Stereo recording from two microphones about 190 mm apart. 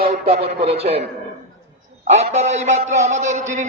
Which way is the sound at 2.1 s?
35° right (ahead or behind).